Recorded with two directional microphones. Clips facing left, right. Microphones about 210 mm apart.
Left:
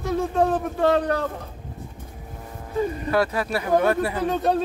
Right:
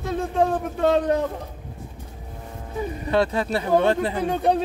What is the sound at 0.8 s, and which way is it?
Speech, 20° right (ahead or behind).